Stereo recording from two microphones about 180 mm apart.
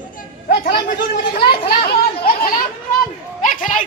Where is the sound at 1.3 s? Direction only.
30° left (ahead or behind).